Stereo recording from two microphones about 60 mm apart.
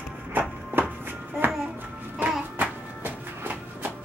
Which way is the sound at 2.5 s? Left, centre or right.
Right.